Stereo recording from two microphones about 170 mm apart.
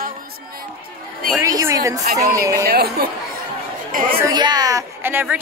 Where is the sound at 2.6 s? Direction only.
65° right (ahead or behind).